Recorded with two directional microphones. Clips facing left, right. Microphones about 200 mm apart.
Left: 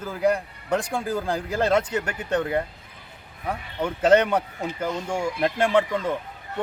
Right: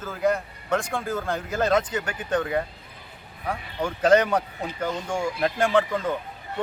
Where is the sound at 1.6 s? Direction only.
10° left (ahead or behind).